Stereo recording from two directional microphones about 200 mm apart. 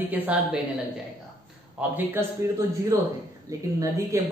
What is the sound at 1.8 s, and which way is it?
Speech, 10° right (ahead or behind).